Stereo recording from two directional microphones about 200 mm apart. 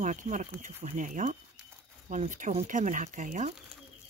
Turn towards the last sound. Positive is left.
turn(degrees=-40)  # may be behind; listen again after turning